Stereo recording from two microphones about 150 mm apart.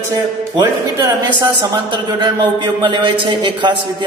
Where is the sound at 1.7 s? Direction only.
30° right (ahead or behind).